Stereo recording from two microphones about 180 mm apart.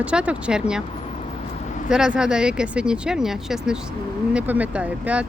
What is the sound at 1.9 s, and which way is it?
Speech, 5° right (ahead or behind).